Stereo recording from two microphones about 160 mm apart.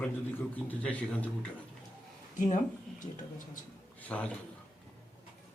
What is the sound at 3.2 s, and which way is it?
Speech, 55° left (ahead or behind).